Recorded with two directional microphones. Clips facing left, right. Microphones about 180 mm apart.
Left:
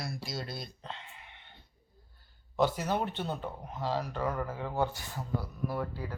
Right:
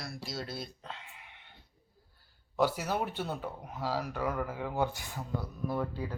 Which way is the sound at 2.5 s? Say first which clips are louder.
Left 1 dB; 10° right (ahead or behind).